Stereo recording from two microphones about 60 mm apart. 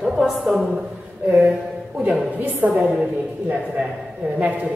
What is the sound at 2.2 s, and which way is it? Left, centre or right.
Speech, right.